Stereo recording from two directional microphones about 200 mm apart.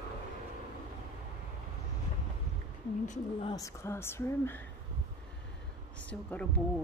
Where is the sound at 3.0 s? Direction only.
35° left (ahead or behind).